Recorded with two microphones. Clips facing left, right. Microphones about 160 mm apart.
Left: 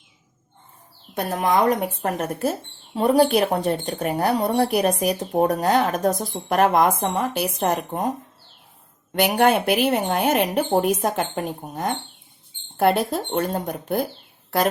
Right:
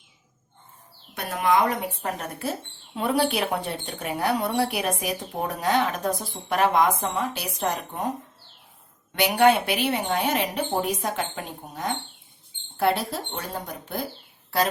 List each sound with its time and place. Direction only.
1.3 s speech: 40° left (ahead or behind)
9.1 s speech: 50° left (ahead or behind)